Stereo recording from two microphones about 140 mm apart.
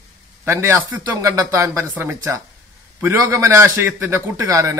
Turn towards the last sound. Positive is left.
turn(degrees=-20)  # may be behind; listen again after turning